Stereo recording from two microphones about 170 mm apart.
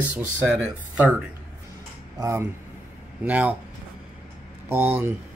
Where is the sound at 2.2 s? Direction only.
15° right (ahead or behind).